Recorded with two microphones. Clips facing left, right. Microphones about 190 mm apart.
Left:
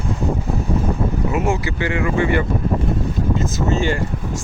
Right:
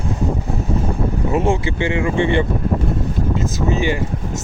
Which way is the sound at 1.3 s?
30° right (ahead or behind).